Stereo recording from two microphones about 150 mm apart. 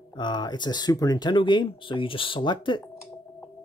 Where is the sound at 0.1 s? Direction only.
30° left (ahead or behind).